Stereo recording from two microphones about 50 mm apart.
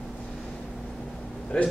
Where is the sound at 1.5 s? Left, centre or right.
Left.